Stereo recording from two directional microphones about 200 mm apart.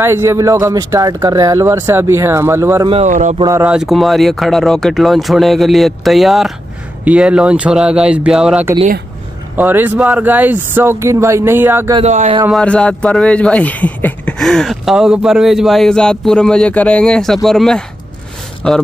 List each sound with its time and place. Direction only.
0.0 s speech: 15° right (ahead or behind)
2.9 s speech: 35° right (ahead or behind)
3.4 s speech: 15° right (ahead or behind)
3.7 s a man's voice: centre (ahead or behind)
12.0 s speech: 35° right (ahead or behind)
12.4 s a man's voice: 5° left (ahead or behind)